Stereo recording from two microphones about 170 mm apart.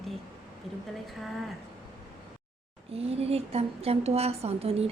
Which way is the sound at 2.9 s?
35° right (ahead or behind).